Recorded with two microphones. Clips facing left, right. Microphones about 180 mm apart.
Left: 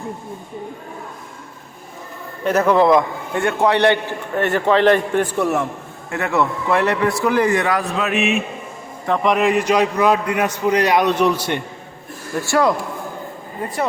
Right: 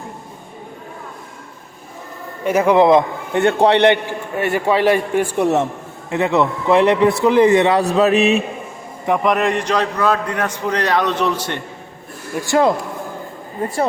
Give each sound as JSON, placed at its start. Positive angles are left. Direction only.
{"t": 2.4, "sound": "a man's voice", "side_deg": -10}
{"t": 4.4, "sound": "a man's voice", "side_deg": -10}
{"t": 5.4, "sound": "a man's voice", "side_deg": -20}
{"t": 9.2, "sound": "a man's voice", "side_deg": 0}
{"t": 12.4, "sound": "a man's voice", "side_deg": -20}